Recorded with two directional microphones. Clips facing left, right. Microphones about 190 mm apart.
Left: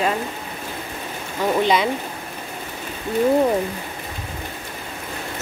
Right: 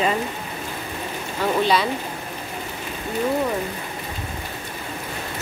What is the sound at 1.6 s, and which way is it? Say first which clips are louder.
Speech: left 1 dB; 20° left (ahead or behind).